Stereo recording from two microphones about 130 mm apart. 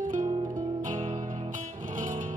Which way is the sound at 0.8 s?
70° right (ahead or behind).